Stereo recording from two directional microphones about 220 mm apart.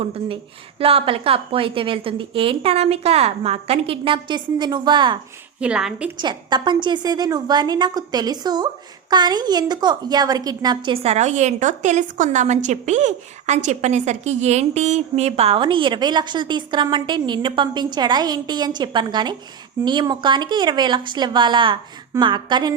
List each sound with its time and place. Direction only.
0.0 s a woman's voice: 25° right (ahead or behind)
5.5 s a woman's voice: 5° right (ahead or behind)
6.1 s a woman's voice: 20° right (ahead or behind)